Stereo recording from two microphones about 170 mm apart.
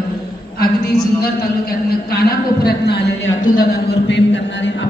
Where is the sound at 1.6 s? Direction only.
65° left (ahead or behind).